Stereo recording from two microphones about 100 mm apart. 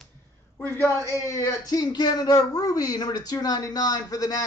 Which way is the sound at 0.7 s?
30° left (ahead or behind).